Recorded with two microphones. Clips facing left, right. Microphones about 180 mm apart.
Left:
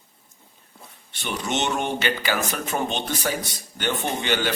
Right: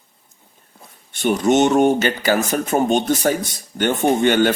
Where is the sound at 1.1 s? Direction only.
45° right (ahead or behind).